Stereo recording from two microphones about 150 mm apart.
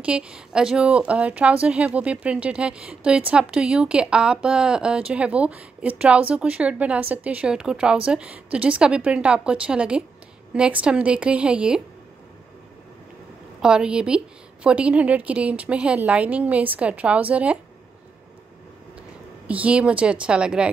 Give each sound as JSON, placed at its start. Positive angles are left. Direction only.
{"t": 0.0, "sound": "speech", "side_deg": -5}
{"t": 13.6, "sound": "speech", "side_deg": -5}
{"t": 19.4, "sound": "speech", "side_deg": -10}